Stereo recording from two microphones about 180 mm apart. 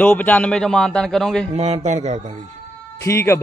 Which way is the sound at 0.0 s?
10° left (ahead or behind).